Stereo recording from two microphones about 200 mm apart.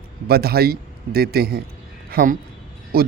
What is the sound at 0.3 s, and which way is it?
A man's voice, 50° right (ahead or behind).